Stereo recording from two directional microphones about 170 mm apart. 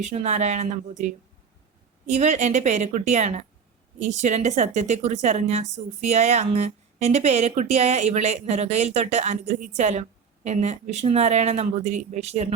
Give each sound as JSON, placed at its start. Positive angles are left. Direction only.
{"t": 0.0, "sound": "a woman's voice", "side_deg": -40}